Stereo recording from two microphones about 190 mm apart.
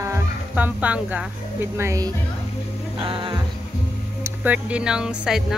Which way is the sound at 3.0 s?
25° right (ahead or behind).